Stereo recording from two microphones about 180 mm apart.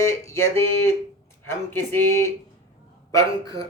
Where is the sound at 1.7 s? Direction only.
10° left (ahead or behind).